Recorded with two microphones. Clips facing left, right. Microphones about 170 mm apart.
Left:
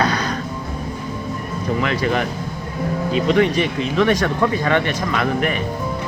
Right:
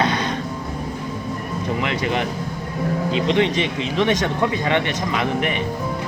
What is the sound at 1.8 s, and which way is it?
Speech, 25° right (ahead or behind).